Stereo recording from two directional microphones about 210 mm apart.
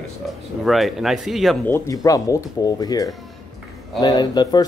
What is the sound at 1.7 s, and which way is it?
Speech, 15° left (ahead or behind).